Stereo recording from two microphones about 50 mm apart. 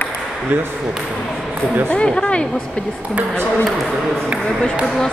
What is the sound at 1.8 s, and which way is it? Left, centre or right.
Speech, centre.